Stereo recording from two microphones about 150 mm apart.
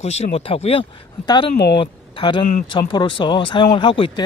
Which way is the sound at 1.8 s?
35° left (ahead or behind).